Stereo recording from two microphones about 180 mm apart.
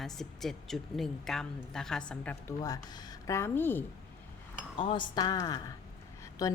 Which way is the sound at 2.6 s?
20° left (ahead or behind).